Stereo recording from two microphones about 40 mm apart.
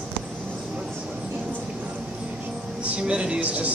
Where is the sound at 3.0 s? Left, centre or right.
Right.